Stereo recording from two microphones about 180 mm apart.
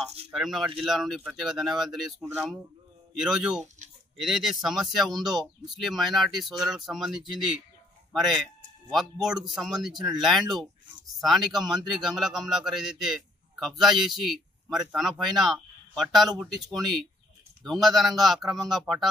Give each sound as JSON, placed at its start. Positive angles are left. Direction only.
{"t": 0.0, "sound": "speech", "side_deg": -35}
{"t": 0.3, "sound": "a man's voice", "side_deg": 0}